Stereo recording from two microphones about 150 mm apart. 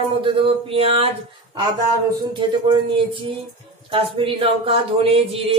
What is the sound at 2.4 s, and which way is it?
Speech, 35° right (ahead or behind).